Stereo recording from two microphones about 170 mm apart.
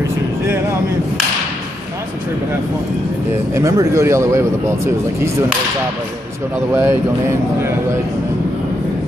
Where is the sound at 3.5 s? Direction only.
20° right (ahead or behind).